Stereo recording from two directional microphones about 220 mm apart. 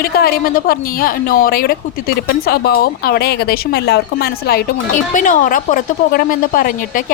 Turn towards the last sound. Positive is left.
turn(degrees=40)  # may be behind; listen again after turning